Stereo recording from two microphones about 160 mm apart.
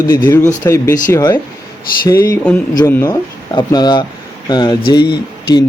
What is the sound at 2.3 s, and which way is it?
Speech, 5° left (ahead or behind).